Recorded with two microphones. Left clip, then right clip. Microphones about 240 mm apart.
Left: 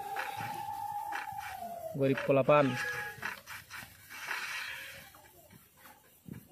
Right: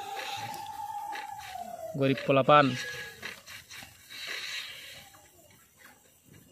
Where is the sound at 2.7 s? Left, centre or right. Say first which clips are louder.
Left 1 dB; centre.